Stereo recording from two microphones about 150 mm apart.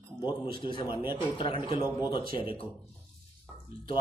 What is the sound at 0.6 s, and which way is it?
A man's voice, 35° left (ahead or behind).